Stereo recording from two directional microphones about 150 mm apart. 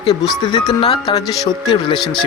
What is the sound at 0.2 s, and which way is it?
Speech, 30° left (ahead or behind).